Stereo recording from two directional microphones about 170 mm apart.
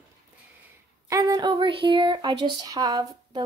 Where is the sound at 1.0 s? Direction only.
20° right (ahead or behind).